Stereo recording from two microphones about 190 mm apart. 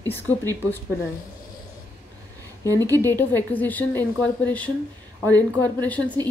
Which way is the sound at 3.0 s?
10° left (ahead or behind).